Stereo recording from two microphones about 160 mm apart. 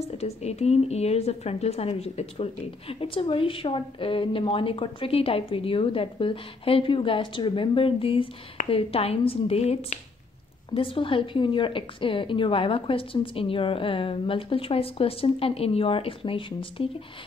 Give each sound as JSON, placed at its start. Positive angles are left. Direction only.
{"t": 0.0, "sound": "a woman's voice", "side_deg": 40}